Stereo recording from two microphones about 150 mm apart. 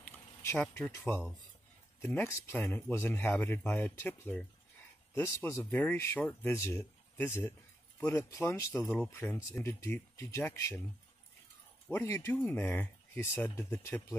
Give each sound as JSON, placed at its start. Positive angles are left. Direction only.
{"t": 0.0, "sound": "speech", "side_deg": 15}
{"t": 11.9, "sound": "speech", "side_deg": 15}